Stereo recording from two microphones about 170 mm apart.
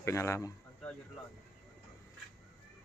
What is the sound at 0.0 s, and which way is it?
Speech, 15° left (ahead or behind).